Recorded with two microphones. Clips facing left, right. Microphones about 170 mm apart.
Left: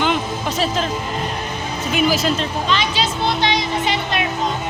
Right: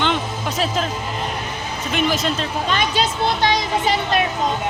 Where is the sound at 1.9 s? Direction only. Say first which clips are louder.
Left 3 dB; 5° left (ahead or behind).